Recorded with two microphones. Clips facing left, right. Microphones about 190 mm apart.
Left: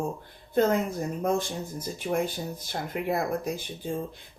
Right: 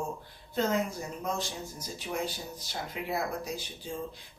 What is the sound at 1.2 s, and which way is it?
Speech, 55° left (ahead or behind).